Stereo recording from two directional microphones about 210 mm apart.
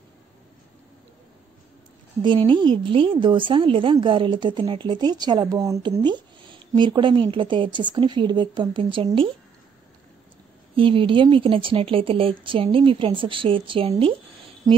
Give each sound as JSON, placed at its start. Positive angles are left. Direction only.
{"t": 2.2, "sound": "a woman's voice", "side_deg": -25}
{"t": 10.8, "sound": "a woman's voice", "side_deg": -25}